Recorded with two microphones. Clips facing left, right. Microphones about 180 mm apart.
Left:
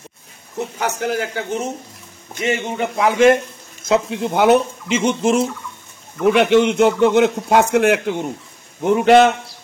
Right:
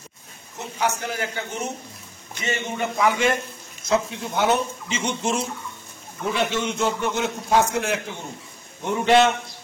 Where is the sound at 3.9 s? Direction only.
65° left (ahead or behind).